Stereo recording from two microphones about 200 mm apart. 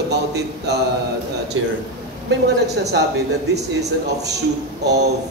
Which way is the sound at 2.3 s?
55° right (ahead or behind).